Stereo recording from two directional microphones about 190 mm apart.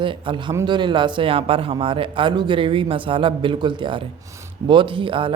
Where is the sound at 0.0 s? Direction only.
25° right (ahead or behind).